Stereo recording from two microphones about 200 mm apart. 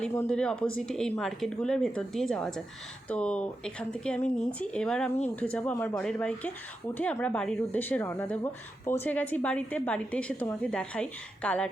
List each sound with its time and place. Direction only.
0.0 s a woman's voice: 10° left (ahead or behind)